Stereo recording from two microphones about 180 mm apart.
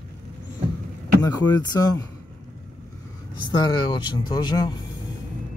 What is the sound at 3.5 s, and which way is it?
Speech, 25° left (ahead or behind).